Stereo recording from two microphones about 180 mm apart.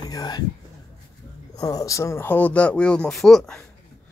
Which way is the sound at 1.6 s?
20° left (ahead or behind).